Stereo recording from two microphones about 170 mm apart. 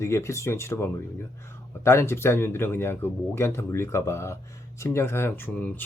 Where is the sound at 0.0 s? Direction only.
15° left (ahead or behind).